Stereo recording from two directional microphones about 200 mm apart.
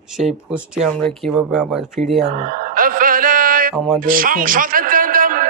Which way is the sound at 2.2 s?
40° right (ahead or behind).